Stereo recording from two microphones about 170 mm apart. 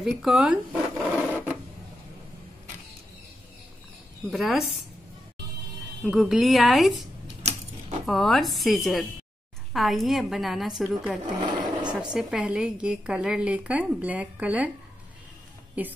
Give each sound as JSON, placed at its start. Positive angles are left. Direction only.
{"t": 0.0, "sound": "zipper", "side_deg": 0}
{"t": 4.3, "sound": "a woman's voice", "side_deg": 0}
{"t": 6.0, "sound": "a woman's voice", "side_deg": -5}
{"t": 8.1, "sound": "a woman's voice", "side_deg": 0}
{"t": 11.3, "sound": "sewing machine", "side_deg": -25}
{"t": 12.0, "sound": "a woman's voice", "side_deg": -5}
{"t": 15.8, "sound": "a woman's voice", "side_deg": -10}